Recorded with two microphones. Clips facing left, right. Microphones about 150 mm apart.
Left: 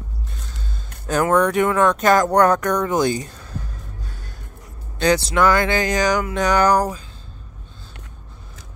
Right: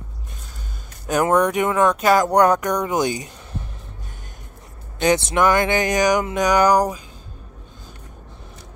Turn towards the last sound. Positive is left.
turn(degrees=-15)  # may be behind; listen again after turning